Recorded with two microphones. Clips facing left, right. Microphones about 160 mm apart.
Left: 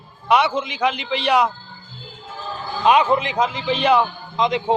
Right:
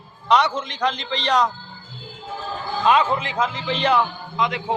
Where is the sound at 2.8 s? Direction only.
15° left (ahead or behind).